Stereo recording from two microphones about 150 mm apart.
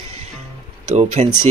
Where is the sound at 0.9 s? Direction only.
50° right (ahead or behind).